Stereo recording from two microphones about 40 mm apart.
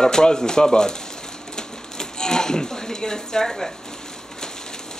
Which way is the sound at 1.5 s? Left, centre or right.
Centre.